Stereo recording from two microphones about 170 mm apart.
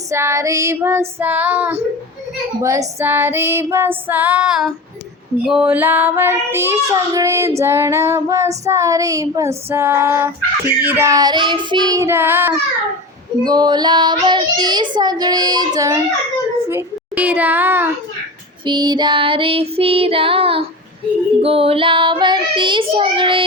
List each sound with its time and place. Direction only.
0.1 s child singing: 15° right (ahead or behind)
13.4 s child singing: 25° right (ahead or behind)
16.6 s a child's voice: 10° right (ahead or behind)
18.6 s female singing: 25° right (ahead or behind)
21.4 s child singing: 35° right (ahead or behind)